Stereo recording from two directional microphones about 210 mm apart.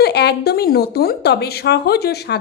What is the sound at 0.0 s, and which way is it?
Speech, 50° left (ahead or behind).